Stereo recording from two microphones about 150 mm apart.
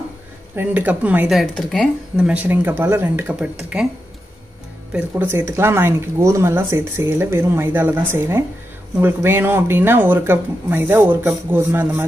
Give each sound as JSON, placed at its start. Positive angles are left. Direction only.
{"t": 0.6, "sound": "speech", "side_deg": -10}
{"t": 1.4, "sound": "speech", "side_deg": 0}
{"t": 4.9, "sound": "speech", "side_deg": -15}